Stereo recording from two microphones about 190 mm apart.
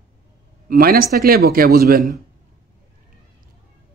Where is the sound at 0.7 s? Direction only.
50° right (ahead or behind).